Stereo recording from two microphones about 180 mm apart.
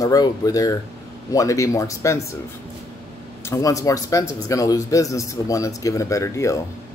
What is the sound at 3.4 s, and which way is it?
Speech, 15° left (ahead or behind).